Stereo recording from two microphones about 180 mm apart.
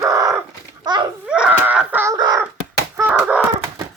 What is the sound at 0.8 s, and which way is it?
Babbling, 25° right (ahead or behind).